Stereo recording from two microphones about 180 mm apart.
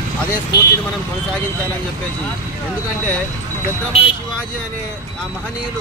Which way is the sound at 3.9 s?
35° left (ahead or behind).